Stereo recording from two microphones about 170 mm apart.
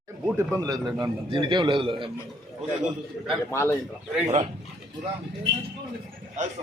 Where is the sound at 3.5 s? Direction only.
15° left (ahead or behind).